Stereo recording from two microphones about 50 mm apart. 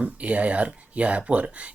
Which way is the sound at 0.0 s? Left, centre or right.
Right.